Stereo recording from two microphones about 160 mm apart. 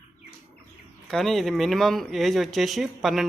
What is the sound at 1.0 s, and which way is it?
Speech, centre (ahead or behind).